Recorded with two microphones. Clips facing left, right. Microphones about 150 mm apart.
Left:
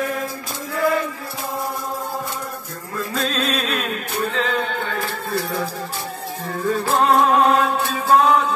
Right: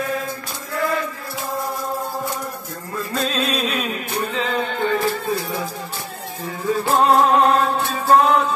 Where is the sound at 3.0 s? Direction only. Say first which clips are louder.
Even; centre (ahead or behind).